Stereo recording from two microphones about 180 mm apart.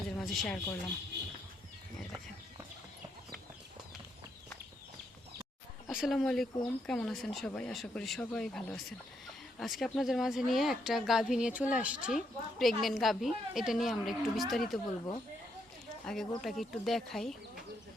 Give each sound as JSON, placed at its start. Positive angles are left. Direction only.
{"t": 0.2, "sound": "a woman's voice", "side_deg": 5}
{"t": 5.9, "sound": "speech", "side_deg": 0}
{"t": 16.0, "sound": "speech", "side_deg": 0}